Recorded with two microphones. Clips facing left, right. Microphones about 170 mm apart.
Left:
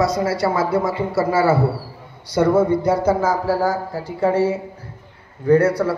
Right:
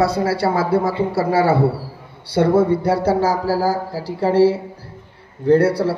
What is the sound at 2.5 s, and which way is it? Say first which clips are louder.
Speech: even; 30° right (ahead or behind).